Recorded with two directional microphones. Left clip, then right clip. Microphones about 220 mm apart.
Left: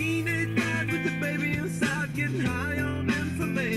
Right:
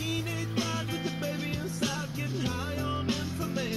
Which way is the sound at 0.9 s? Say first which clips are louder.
Left 5 dB; 45° left (ahead or behind).